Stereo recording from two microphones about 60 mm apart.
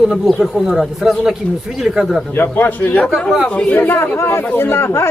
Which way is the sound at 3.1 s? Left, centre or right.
Centre.